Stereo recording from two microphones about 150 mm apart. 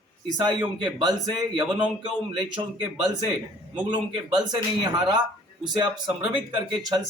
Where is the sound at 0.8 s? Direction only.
30° right (ahead or behind).